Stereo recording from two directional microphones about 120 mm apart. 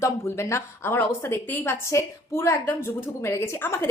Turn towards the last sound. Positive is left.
turn(degrees=25)  # may be behind; listen again after turning